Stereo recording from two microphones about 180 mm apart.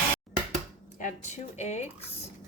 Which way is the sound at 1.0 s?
40° left (ahead or behind).